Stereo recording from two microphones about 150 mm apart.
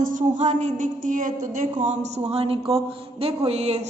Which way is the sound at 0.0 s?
55° right (ahead or behind).